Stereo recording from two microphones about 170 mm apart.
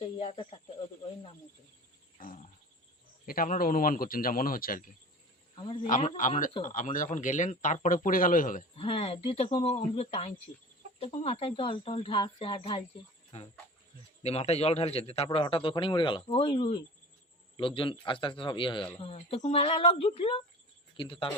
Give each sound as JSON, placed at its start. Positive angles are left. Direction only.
{"t": 0.2, "sound": "speech", "side_deg": 30}
{"t": 2.1, "sound": "frog", "side_deg": 50}
{"t": 3.2, "sound": "a man's voice", "side_deg": 55}
{"t": 5.5, "sound": "a man's voice", "side_deg": 30}
{"t": 6.1, "sound": "speech", "side_deg": 50}
{"t": 8.7, "sound": "a man's voice", "side_deg": 35}